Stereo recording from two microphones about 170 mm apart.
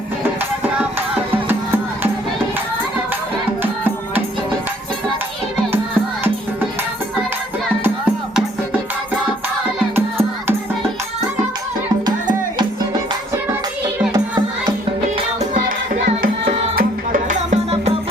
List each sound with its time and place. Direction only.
3.6 s music: 10° right (ahead or behind)
9.9 s music: 15° right (ahead or behind)
16.7 s music: 55° right (ahead or behind)